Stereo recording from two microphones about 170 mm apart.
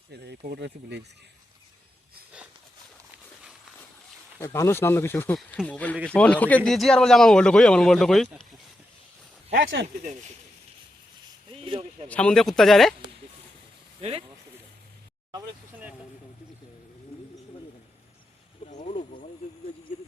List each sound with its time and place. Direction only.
0.1 s speech: 75° right (ahead or behind)
4.4 s speech: 15° left (ahead or behind); by 8.4 s centre (ahead or behind)
9.5 s speech: 80° right
11.6 s speech: 30° right (ahead or behind)
12.0 s speech: 5° left (ahead or behind)
14.0 s speech: 35° right (ahead or behind)
18.7 s a sound: 45° left (ahead or behind)